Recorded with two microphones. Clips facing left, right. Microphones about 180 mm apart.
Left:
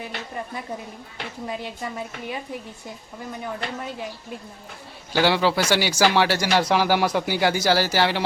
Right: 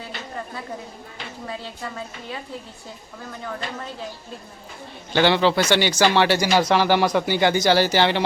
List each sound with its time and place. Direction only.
0.0 s a sound: 15° left (ahead or behind)
1.5 s a woman's voice: 15° left (ahead or behind)
5.1 s speech: 5° left (ahead or behind)